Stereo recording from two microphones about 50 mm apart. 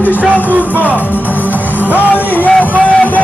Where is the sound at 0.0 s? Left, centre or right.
Left.